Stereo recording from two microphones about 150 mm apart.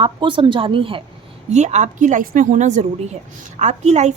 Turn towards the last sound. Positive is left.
turn(degrees=-50)  # may be behind; listen again after turning